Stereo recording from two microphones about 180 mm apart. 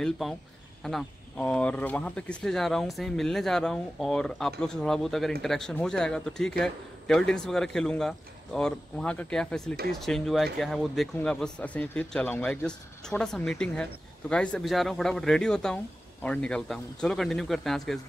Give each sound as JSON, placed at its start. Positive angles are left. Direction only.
{"t": 0.0, "sound": "speech", "side_deg": 5}